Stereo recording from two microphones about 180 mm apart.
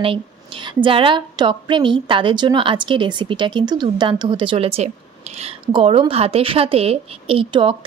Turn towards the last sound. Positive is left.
turn(degrees=-30)  # may be behind; listen again after turning